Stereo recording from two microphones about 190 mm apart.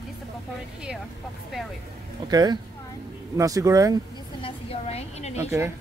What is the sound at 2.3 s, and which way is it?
A woman's voice, 20° right (ahead or behind).